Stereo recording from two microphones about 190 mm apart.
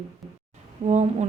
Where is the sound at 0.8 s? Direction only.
35° right (ahead or behind).